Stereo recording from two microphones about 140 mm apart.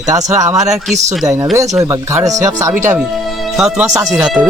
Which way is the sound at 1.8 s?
20° right (ahead or behind).